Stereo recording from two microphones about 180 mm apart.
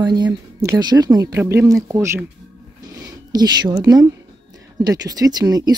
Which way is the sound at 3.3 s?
25° right (ahead or behind).